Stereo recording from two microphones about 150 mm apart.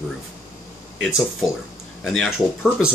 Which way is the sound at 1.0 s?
Centre (ahead or behind).